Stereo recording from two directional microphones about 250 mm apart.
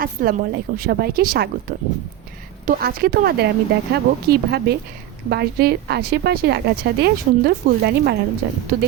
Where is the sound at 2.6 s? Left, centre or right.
Right.